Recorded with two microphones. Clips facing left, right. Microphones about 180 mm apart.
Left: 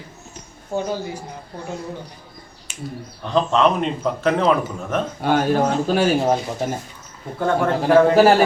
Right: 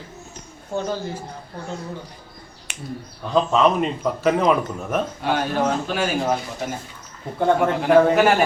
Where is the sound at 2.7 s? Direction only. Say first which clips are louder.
Left 3 dB; 65° right (ahead or behind).